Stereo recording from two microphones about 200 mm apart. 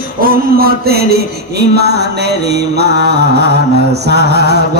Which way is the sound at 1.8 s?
55° right (ahead or behind).